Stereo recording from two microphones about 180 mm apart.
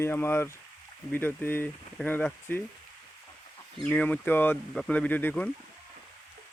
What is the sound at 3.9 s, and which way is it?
Speech, 10° left (ahead or behind).